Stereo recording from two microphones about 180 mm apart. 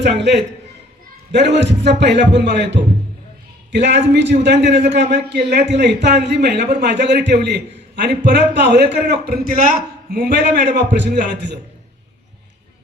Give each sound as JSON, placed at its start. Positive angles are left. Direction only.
{"t": 0.2, "sound": "a man's voice", "side_deg": -75}